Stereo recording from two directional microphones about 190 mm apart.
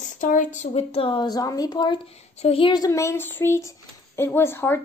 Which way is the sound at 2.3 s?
30° left (ahead or behind).